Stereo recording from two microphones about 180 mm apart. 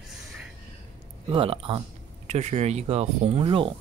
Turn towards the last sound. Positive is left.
turn(degrees=-30)  # may be behind; listen again after turning